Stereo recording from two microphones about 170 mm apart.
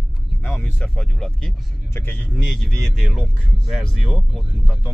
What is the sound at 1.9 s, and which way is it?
Speech, 15° left (ahead or behind).